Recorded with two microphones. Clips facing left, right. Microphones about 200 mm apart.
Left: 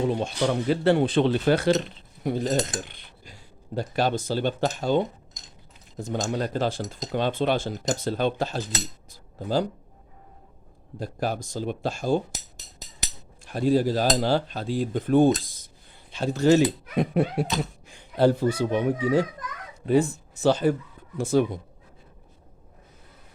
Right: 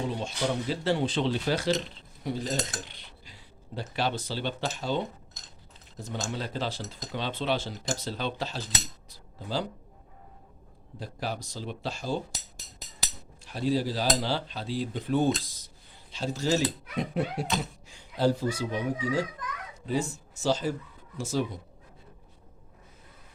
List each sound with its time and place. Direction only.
0.2 s speech: 60° left (ahead or behind)
2.2 s cutlery: 55° left (ahead or behind)
11.0 s cutlery: 50° left (ahead or behind)
13.4 s cutlery: 50° left (ahead or behind)
16.1 s speech: 60° left (ahead or behind)